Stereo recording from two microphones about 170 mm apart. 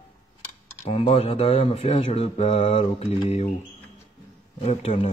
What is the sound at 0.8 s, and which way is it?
Speech, 35° left (ahead or behind).